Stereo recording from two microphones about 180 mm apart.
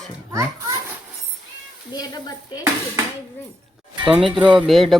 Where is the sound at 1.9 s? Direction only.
20° left (ahead or behind).